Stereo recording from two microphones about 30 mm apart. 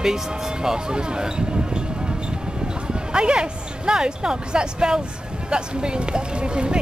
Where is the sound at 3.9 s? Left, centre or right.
Right.